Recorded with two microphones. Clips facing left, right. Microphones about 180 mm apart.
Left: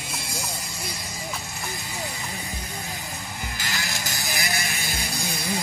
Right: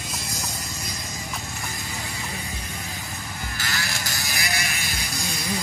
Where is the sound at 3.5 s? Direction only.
20° left (ahead or behind).